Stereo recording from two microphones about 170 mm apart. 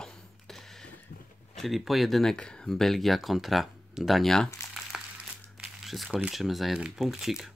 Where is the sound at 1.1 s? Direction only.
70° left (ahead or behind).